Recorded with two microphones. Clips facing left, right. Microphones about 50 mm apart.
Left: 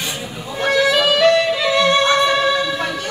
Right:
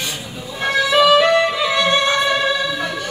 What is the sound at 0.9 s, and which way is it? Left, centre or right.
Music, right.